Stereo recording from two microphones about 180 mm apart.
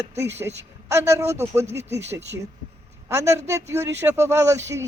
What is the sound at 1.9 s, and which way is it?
Speech, 35° right (ahead or behind).